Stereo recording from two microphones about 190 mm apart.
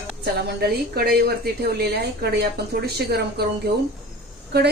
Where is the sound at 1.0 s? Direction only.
55° right (ahead or behind).